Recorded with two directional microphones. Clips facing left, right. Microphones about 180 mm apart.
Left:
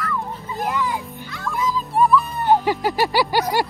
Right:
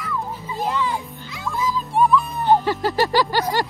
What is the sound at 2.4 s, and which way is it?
Music, 10° left (ahead or behind).